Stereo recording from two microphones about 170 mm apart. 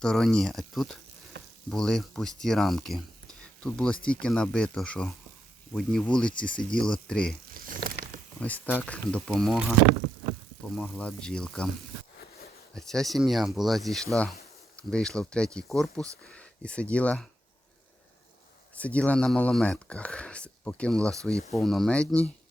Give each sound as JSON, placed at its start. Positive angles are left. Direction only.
{"t": 0.0, "sound": "speech", "side_deg": 5}
{"t": 7.5, "sound": "a sound", "side_deg": -55}
{"t": 8.4, "sound": "speech", "side_deg": 10}
{"t": 10.8, "sound": "speech", "side_deg": 5}
{"t": 12.7, "sound": "speech", "side_deg": 0}
{"t": 18.7, "sound": "speech", "side_deg": 10}